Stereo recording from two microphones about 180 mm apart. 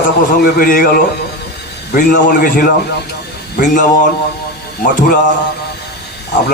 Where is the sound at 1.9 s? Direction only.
50° left (ahead or behind).